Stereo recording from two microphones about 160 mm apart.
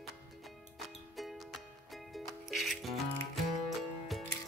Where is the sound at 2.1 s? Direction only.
Centre (ahead or behind).